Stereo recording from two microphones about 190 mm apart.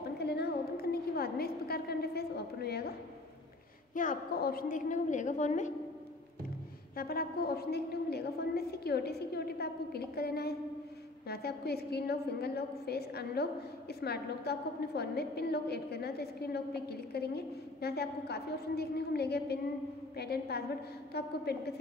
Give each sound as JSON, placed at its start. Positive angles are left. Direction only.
{"t": 0.2, "sound": "a sound", "side_deg": 60}
{"t": 3.9, "sound": "a woman's voice", "side_deg": 45}
{"t": 7.0, "sound": "a woman's voice", "side_deg": 50}